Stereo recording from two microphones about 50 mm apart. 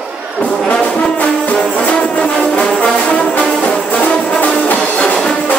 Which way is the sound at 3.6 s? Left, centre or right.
Left.